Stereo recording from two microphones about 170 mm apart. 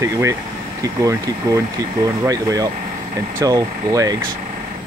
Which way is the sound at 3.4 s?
20° right (ahead or behind).